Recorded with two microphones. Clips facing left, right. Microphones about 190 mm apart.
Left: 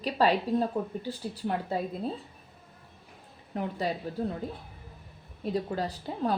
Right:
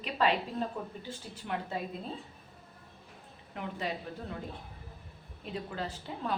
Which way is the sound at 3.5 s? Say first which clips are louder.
Left 6 dB; 35° left (ahead or behind).